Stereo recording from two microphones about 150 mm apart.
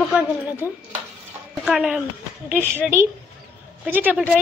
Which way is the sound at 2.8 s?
15° right (ahead or behind).